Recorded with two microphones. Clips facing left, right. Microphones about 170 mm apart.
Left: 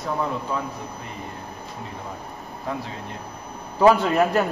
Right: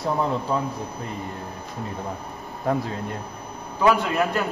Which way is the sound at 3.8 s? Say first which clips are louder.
Left 4 dB; 30° left (ahead or behind).